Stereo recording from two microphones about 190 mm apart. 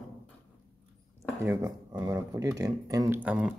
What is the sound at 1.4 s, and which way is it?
Speech, 15° right (ahead or behind).